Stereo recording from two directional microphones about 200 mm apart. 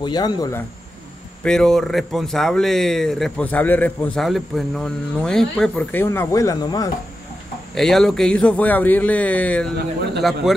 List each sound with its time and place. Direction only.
0.0 s speech: 20° left (ahead or behind)
1.4 s speech: 5° left (ahead or behind); by 6.9 s 20° left (ahead or behind)
7.7 s a man's voice: centre (ahead or behind)